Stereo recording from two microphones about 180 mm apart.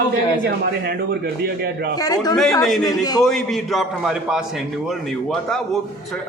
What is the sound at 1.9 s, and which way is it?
A man's voice, 20° left (ahead or behind).